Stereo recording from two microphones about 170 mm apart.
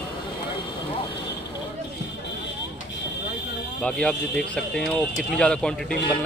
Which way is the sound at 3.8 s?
5° left (ahead or behind).